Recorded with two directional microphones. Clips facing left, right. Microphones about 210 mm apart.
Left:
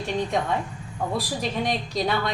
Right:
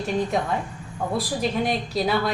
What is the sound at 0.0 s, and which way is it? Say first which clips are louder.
A woman's voice: right 2 dB; centre (ahead or behind).